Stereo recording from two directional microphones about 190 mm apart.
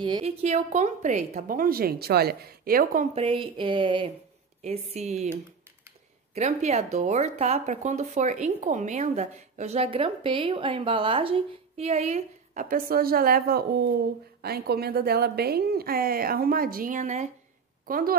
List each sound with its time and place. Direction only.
0.0 s a woman's voice: 30° right (ahead or behind); by 3.1 s 45° right (ahead or behind)
3.2 s a sound: 30° right (ahead or behind)
4.6 s a woman's voice: 35° right (ahead or behind)